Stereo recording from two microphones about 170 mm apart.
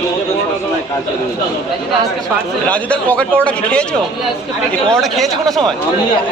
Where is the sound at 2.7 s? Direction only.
5° left (ahead or behind).